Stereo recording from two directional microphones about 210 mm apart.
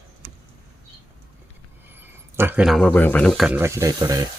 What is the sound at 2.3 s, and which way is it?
Speech, 10° right (ahead or behind).